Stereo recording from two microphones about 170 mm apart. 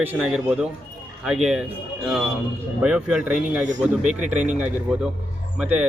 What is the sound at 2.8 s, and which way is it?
Speech, 5° right (ahead or behind).